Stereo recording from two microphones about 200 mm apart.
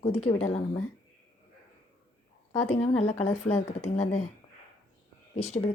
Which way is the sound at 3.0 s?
35° left (ahead or behind).